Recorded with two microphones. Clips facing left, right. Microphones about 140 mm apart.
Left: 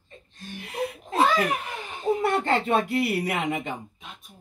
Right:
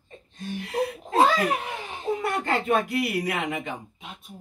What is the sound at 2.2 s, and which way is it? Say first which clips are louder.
Speech: left 2 dB; 25° left (ahead or behind).